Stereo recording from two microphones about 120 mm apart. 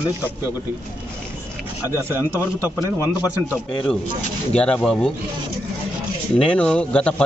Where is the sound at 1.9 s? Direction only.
20° right (ahead or behind).